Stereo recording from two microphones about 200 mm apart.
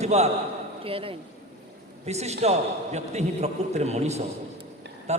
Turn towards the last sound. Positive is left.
turn(degrees=-35)  # may be behind; listen again after turning